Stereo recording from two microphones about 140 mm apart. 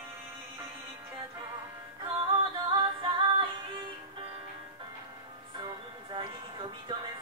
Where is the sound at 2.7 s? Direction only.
35° right (ahead or behind).